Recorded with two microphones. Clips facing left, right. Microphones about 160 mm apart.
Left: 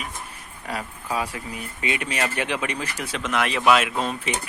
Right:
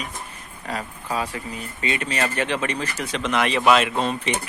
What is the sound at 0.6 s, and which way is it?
Speech, 10° left (ahead or behind).